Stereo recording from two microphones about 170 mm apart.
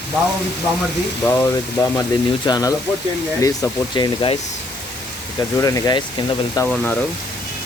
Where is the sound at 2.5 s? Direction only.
25° left (ahead or behind).